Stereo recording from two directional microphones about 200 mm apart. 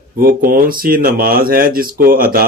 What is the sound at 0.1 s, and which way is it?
Speech, 45° right (ahead or behind).